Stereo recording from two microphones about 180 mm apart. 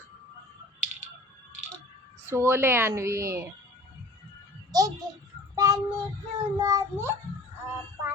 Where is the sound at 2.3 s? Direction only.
15° right (ahead or behind).